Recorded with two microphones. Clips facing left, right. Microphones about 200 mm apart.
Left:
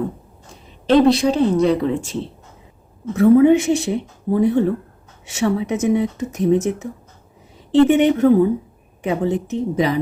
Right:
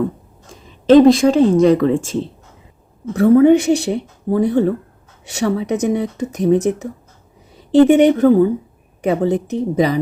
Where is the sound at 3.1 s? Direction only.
60° right (ahead or behind).